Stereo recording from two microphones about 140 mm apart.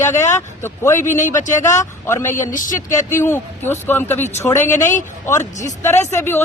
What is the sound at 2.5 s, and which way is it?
Speech, 70° left (ahead or behind).